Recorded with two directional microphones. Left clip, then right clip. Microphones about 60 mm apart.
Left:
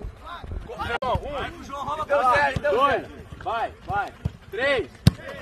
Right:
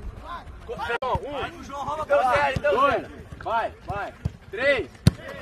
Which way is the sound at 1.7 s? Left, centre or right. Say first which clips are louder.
Left 1 dB; centre.